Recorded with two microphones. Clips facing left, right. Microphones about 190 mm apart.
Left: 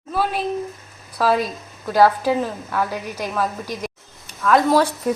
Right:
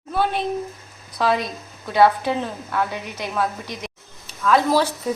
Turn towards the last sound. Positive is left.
turn(degrees=0)  # may be behind; listen again after turning